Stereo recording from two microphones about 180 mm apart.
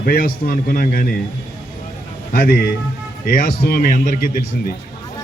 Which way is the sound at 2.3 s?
55° left (ahead or behind).